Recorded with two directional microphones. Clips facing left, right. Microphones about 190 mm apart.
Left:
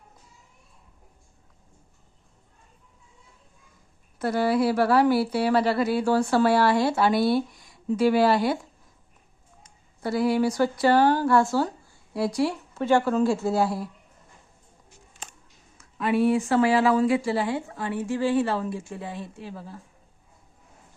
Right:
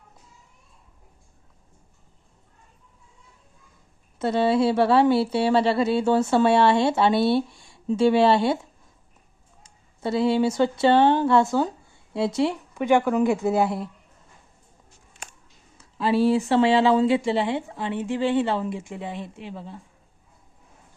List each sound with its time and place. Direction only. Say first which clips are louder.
4.2 s speech: right 2 dB; 25° right (ahead or behind)
9.6 s speech: right 2 dB; 25° right (ahead or behind)
15.8 s speech: right 2 dB; 30° right (ahead or behind)